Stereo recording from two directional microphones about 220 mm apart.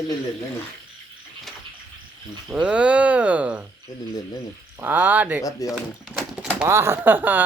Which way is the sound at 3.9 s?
15° left (ahead or behind).